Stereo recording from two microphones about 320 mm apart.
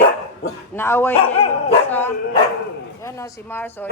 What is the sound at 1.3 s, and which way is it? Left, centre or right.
Speech, centre.